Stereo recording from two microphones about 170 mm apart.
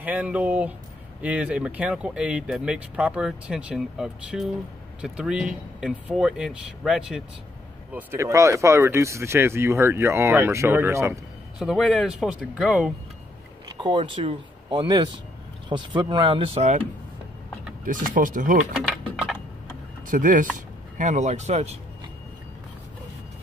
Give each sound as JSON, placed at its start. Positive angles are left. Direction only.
{"t": 0.0, "sound": "speech", "side_deg": -10}
{"t": 7.9, "sound": "speech", "side_deg": -15}
{"t": 11.6, "sound": "speech", "side_deg": 0}
{"t": 13.7, "sound": "speech", "side_deg": -25}
{"t": 17.8, "sound": "speech", "side_deg": -50}
{"t": 18.9, "sound": "a sound", "side_deg": 0}
{"t": 20.1, "sound": "speech", "side_deg": -50}